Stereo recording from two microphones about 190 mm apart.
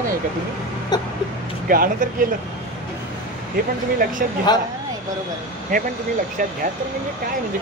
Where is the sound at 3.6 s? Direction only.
50° right (ahead or behind).